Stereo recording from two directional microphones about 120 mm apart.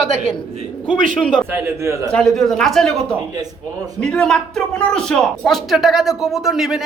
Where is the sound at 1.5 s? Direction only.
20° right (ahead or behind).